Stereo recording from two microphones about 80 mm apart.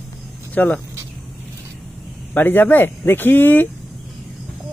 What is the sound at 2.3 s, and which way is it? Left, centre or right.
Speech, left.